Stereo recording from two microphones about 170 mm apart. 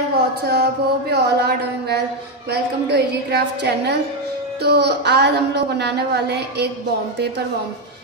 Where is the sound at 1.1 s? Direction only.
75° right (ahead or behind).